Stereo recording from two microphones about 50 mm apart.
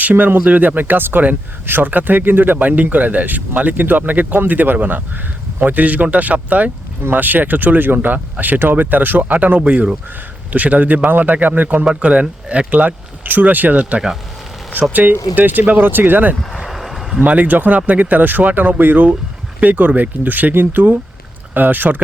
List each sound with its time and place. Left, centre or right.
0.0 s speech: right
9.6 s speech: right
14.8 s speech: right
16.6 s a sound: centre
17.2 s speech: right